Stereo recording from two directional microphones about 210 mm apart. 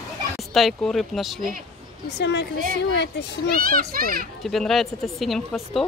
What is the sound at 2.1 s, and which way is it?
A child's voice, 55° left (ahead or behind).